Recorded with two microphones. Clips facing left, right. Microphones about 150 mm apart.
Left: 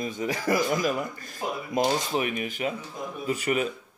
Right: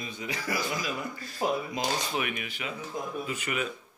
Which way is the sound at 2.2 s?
35° left (ahead or behind).